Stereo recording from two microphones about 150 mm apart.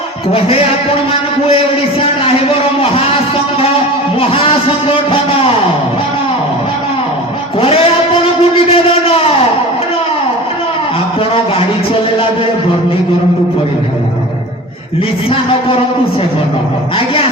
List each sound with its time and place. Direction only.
0.3 s a man's voice: 40° left (ahead or behind)
4.2 s a man's voice: 40° left (ahead or behind)
7.6 s a sound: 40° left (ahead or behind)